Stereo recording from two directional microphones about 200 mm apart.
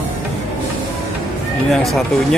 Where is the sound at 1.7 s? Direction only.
Centre (ahead or behind).